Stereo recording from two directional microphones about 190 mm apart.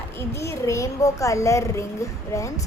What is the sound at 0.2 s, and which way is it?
A woman's voice, 15° left (ahead or behind).